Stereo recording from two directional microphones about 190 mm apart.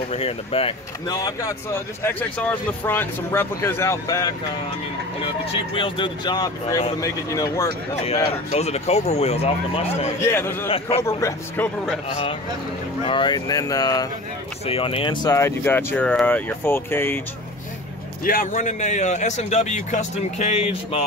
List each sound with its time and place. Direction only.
0.1 s a man's voice: 30° left (ahead or behind)
1.0 s speech: 20° left (ahead or behind)
5.2 s speech: 30° left (ahead or behind)
8.0 s a man's voice: 30° left (ahead or behind)
10.2 s speech: 10° left (ahead or behind)
13.0 s speech: 25° left (ahead or behind)
18.2 s a man's voice: 45° left (ahead or behind)